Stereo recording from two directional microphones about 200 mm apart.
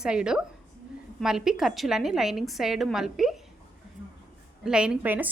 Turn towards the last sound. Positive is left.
turn(degrees=-10)  # may be behind; listen again after turning